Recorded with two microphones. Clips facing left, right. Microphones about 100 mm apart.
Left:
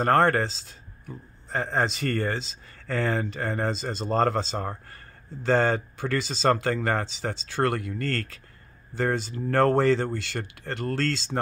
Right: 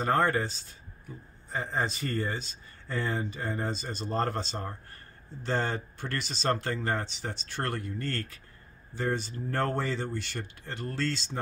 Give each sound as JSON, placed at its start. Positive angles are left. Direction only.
{"t": 0.0, "sound": "a man's voice", "side_deg": 65}